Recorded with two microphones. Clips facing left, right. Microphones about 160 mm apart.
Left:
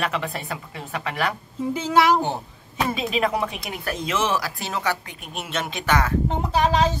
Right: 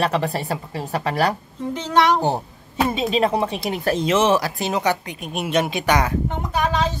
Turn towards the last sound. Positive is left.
turn(degrees=30)  # may be behind; listen again after turning